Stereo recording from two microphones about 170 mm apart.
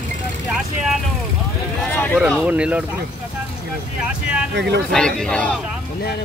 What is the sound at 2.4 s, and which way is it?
Speech, 5° right (ahead or behind).